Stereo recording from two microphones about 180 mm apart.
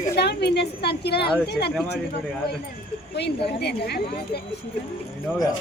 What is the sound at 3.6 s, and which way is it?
Speech, 65° left (ahead or behind).